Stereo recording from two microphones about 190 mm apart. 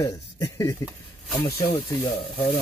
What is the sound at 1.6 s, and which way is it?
Speech, 30° left (ahead or behind).